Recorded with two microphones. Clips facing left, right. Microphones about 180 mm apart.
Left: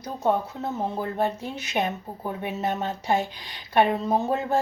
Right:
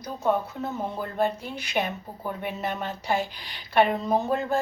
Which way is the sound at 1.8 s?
20° left (ahead or behind).